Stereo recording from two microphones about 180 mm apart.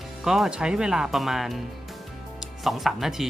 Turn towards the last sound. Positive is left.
turn(degrees=0)  # may be behind; listen again after turning